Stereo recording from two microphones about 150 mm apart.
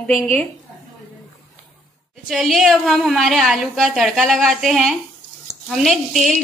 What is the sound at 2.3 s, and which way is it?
A woman's voice, centre (ahead or behind).